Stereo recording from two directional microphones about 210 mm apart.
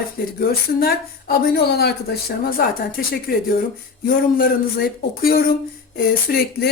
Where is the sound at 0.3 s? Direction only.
45° left (ahead or behind).